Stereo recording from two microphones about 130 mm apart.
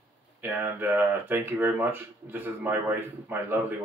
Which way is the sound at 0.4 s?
15° right (ahead or behind).